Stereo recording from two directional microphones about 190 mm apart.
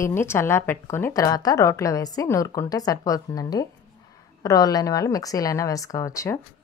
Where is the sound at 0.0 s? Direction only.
15° left (ahead or behind).